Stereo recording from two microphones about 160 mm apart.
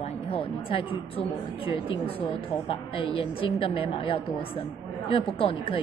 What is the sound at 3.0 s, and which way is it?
A woman's voice, 35° left (ahead or behind).